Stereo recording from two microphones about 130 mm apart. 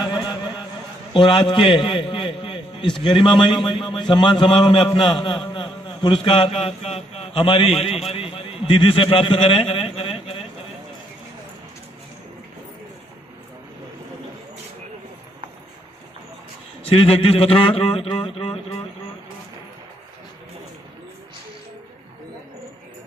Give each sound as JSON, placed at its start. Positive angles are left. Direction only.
{"t": 0.0, "sound": "a sound", "side_deg": 35}
{"t": 1.1, "sound": "a man's voice", "side_deg": 40}
{"t": 16.9, "sound": "a man's voice", "side_deg": 45}